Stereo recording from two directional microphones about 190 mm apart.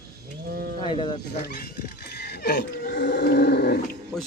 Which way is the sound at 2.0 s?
60° left (ahead or behind).